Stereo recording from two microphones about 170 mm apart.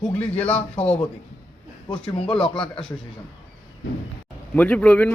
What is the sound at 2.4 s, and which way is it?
Speech, 30° left (ahead or behind).